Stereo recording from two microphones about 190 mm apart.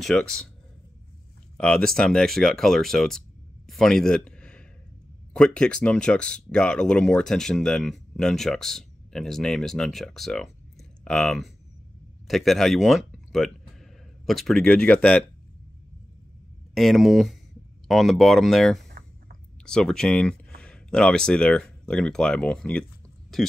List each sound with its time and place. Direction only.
0.0 s speech: 5° left (ahead or behind)
1.6 s speech: 5° left (ahead or behind)
16.7 s speech: centre (ahead or behind)
18.9 s a sound: 55° right (ahead or behind)
19.6 s speech: 5° left (ahead or behind)